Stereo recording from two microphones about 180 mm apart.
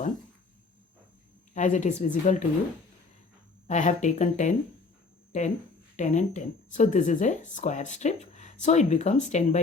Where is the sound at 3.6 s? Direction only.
40° left (ahead or behind).